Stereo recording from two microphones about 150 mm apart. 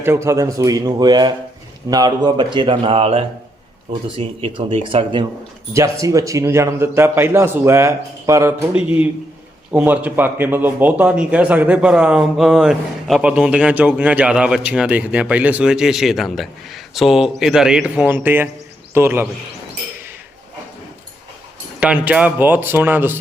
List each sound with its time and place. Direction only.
0.0 s a man's voice: 15° right (ahead or behind); by 5.2 s 35° right (ahead or behind)
5.7 s speech: 20° right (ahead or behind)
9.7 s speech: 10° right (ahead or behind)
21.8 s speech: 10° right (ahead or behind)